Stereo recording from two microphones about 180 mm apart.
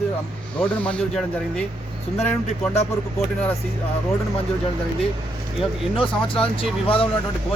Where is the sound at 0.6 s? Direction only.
5° left (ahead or behind).